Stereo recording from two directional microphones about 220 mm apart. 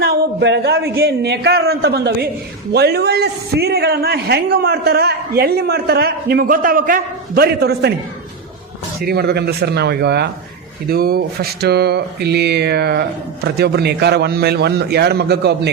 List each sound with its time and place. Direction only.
0.0 s a sound: 45° right (ahead or behind)
1.0 s a man's voice: 50° right (ahead or behind)
9.0 s a man's voice: 45° right (ahead or behind)